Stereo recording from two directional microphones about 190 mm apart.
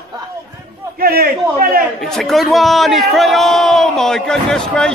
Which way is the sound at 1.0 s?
50° right (ahead or behind).